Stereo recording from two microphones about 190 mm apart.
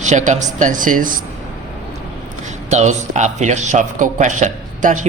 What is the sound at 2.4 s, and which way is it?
Speech, 35° right (ahead or behind).